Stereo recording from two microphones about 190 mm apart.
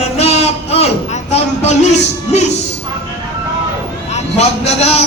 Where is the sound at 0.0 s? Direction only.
35° left (ahead or behind).